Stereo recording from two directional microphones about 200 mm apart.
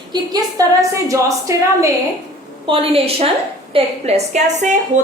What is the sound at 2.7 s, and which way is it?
A woman's voice, 25° right (ahead or behind).